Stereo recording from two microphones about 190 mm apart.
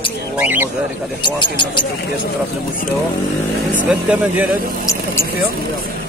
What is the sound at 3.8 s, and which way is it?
Speech, 5° right (ahead or behind).